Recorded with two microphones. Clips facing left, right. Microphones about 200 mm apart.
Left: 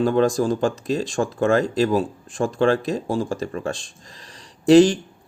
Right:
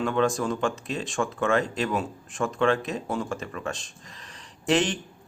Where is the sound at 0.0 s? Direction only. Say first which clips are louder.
Left 6 dB; 35° left (ahead or behind).